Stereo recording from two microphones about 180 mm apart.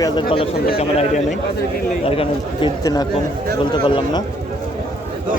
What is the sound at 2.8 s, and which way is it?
Speech, 20° left (ahead or behind).